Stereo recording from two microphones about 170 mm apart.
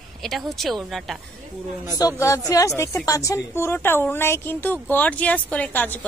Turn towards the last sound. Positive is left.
turn(degrees=10)  # may be behind; listen again after turning